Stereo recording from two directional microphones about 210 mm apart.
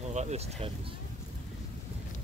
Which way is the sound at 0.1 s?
30° right (ahead or behind).